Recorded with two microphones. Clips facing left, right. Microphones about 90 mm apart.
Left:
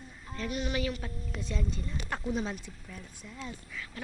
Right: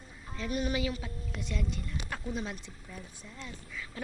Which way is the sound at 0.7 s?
15° right (ahead or behind).